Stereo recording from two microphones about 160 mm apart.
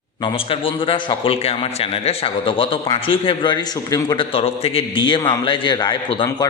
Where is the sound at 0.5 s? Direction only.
35° left (ahead or behind).